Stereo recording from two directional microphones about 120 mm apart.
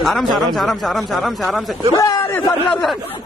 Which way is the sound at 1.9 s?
30° left (ahead or behind).